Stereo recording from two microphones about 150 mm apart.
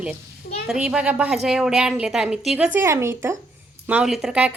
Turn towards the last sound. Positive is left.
turn(degrees=-10)  # may be behind; listen again after turning